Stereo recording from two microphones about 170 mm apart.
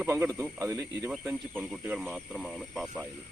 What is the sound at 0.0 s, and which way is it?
Speech, 15° right (ahead or behind).